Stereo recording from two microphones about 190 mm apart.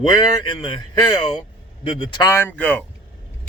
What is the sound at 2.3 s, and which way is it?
Speech, 10° left (ahead or behind).